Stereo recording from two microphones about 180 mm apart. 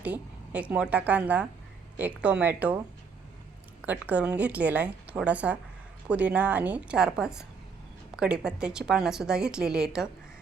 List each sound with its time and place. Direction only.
0.0 s a woman's voice: 10° right (ahead or behind)
3.8 s a woman's voice: 10° right (ahead or behind)